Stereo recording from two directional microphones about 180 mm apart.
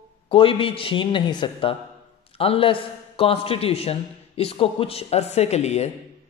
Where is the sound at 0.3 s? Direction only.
30° left (ahead or behind).